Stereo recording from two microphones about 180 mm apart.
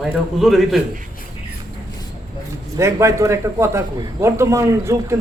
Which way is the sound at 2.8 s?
15° right (ahead or behind).